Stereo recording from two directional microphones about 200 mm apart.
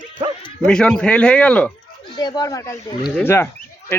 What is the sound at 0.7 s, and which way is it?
A man's voice, 5° left (ahead or behind).